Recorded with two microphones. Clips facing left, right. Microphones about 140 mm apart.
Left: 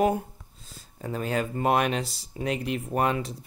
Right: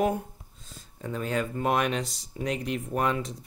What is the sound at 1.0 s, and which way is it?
Speech, 35° left (ahead or behind).